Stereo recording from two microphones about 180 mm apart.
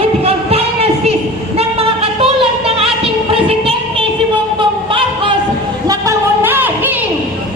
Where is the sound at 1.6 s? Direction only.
35° right (ahead or behind).